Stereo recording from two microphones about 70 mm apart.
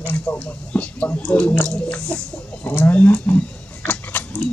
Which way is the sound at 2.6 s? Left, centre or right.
Left.